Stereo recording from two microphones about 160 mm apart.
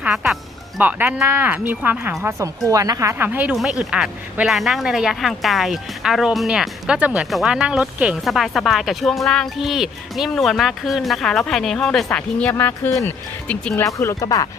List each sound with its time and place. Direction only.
0.0 s a woman's voice: 5° right (ahead or behind); by 14.4 s 20° left (ahead or behind)